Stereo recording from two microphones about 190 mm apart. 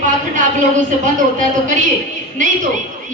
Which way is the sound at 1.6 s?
40° right (ahead or behind).